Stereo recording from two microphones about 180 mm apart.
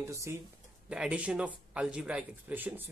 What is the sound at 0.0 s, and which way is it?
Speech, 15° right (ahead or behind).